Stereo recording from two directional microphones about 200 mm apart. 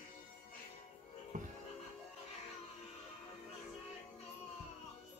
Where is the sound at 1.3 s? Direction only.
40° right (ahead or behind).